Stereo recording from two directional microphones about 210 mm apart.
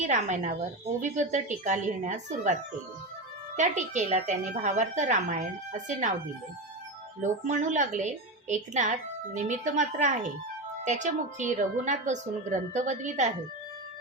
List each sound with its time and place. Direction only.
0.0 s a woman's voice: 35° right (ahead or behind)
7.2 s a woman's voice: 35° right (ahead or behind)